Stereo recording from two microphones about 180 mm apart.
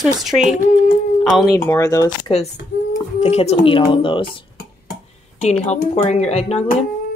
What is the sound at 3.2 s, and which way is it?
Speech, 35° left (ahead or behind).